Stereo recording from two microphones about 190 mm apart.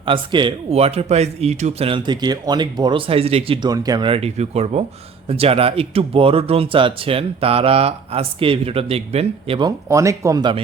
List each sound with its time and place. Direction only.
0.0 s speech: 25° right (ahead or behind)